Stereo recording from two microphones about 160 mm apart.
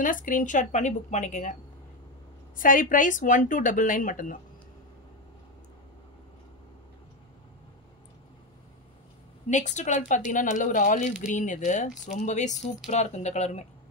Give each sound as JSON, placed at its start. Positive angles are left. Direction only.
{"t": 0.0, "sound": "a woman's voice", "side_deg": 55}
{"t": 9.5, "sound": "a woman's voice", "side_deg": 50}